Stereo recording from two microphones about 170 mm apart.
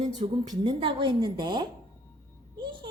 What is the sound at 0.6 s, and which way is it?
A woman's voice, 30° right (ahead or behind).